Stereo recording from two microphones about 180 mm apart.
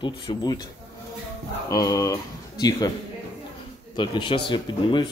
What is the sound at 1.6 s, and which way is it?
Speech, 20° left (ahead or behind).